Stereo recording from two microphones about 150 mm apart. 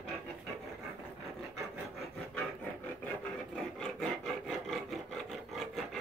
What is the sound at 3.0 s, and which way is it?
Filing, 5° left (ahead or behind).